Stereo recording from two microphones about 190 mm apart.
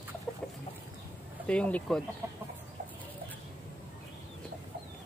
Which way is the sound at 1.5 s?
5° left (ahead or behind).